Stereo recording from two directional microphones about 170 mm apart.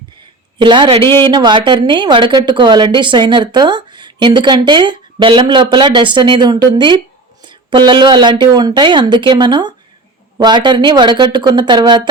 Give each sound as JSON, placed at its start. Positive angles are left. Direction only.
{"t": 0.6, "sound": "speech", "side_deg": -30}